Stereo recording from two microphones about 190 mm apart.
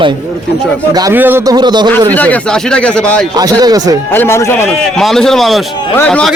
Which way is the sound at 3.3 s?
20° right (ahead or behind).